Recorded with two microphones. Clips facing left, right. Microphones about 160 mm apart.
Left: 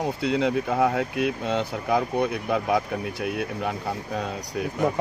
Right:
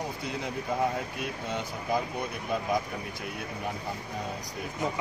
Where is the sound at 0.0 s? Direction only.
90° left.